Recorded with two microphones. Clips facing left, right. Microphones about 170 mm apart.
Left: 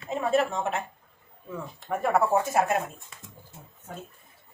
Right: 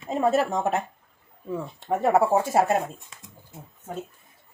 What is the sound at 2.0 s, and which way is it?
Speech, 30° right (ahead or behind).